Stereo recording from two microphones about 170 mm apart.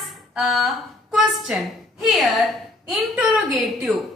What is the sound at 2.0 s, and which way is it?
A woman's voice, centre (ahead or behind).